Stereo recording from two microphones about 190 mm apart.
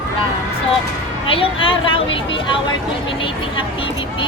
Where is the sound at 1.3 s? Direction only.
30° left (ahead or behind).